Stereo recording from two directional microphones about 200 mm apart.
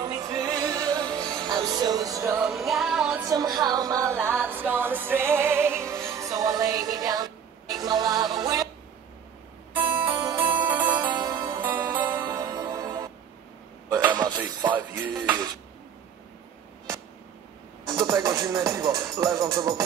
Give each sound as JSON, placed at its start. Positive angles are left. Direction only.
{"t": 0.0, "sound": "music", "side_deg": -20}
{"t": 3.3, "sound": "music", "side_deg": -20}
{"t": 9.8, "sound": "music", "side_deg": -10}
{"t": 11.1, "sound": "music", "side_deg": -20}
{"t": 12.1, "sound": "music", "side_deg": -20}
{"t": 14.1, "sound": "music", "side_deg": -20}
{"t": 18.0, "sound": "music", "side_deg": -15}